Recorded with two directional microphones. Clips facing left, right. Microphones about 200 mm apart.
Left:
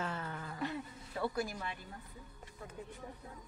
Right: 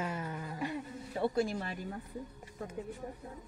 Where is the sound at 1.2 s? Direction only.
25° right (ahead or behind).